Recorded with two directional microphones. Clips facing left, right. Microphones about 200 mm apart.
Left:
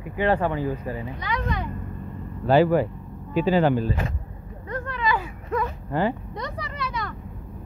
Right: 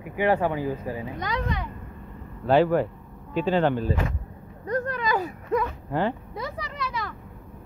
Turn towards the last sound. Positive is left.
turn(degrees=0)  # may be behind; listen again after turning